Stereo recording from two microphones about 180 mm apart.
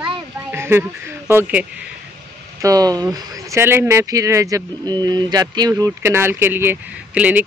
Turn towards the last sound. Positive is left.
turn(degrees=-5)  # may be behind; listen again after turning